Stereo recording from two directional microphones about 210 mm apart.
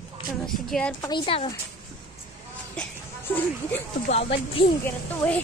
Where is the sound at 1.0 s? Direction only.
25° left (ahead or behind).